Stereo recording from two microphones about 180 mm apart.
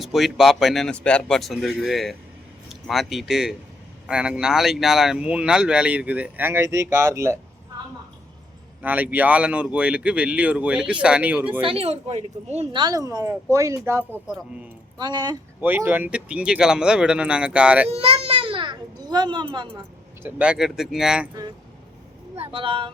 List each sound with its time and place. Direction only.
0.0 s speech: centre (ahead or behind)
8.8 s speech: 10° right (ahead or behind)
11.6 s a woman's voice: 30° right (ahead or behind)
12.8 s speech: 20° right (ahead or behind)
14.9 s speech: 25° right (ahead or behind)
15.6 s speech: 10° right (ahead or behind)
17.9 s a child's voice: 35° right (ahead or behind)
20.2 s speech: 5° right (ahead or behind)
22.4 s speech: 30° right (ahead or behind)